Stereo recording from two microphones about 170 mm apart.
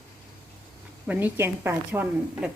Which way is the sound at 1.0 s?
10° right (ahead or behind).